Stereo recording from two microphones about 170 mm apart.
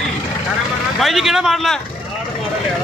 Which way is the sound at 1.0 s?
Centre (ahead or behind).